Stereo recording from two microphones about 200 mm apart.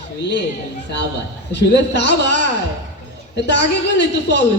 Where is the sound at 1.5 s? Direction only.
60° left (ahead or behind).